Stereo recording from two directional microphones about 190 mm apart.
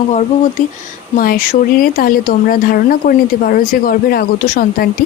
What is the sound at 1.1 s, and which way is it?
Speech, 50° left (ahead or behind).